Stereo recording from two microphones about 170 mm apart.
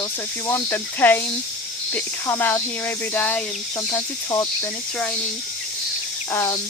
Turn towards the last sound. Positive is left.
turn(degrees=15)  # may be behind; listen again after turning